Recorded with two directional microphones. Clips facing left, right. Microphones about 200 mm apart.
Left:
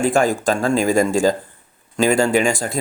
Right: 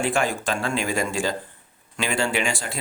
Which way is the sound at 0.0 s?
40° left (ahead or behind).